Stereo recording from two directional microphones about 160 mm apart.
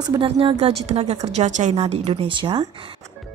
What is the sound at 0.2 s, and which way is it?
A woman's voice, 35° right (ahead or behind).